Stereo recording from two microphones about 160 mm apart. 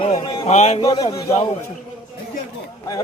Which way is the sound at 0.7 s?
30° left (ahead or behind).